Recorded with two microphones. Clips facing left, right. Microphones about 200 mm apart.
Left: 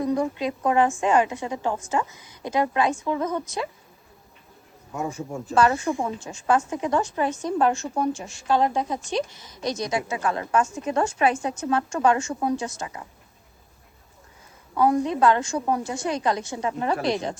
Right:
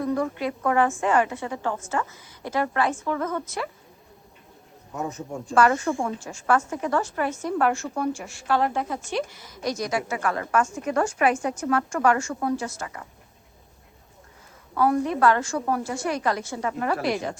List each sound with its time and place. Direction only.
0.0 s a woman's voice: 20° left (ahead or behind)
4.9 s a woman's voice: 10° left (ahead or behind)
6.1 s a woman's voice: 20° left (ahead or behind)
14.8 s a woman's voice: 20° left (ahead or behind)